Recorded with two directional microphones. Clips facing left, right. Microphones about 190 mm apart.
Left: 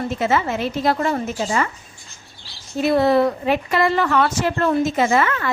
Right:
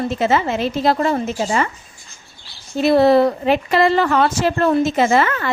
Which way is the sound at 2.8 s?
35° right (ahead or behind).